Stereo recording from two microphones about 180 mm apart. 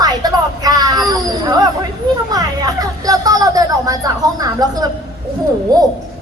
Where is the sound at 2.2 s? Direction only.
20° right (ahead or behind).